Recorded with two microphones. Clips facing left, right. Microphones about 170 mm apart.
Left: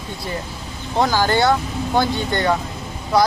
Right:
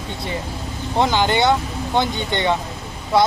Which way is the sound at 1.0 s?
20° right (ahead or behind).